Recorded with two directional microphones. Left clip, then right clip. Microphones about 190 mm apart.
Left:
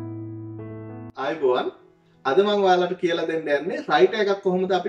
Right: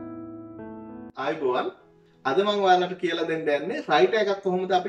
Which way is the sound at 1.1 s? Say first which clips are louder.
Left 3 dB; centre (ahead or behind).